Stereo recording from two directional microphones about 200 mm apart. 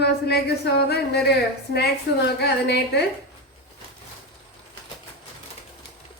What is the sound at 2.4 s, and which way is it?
Speech, 55° left (ahead or behind).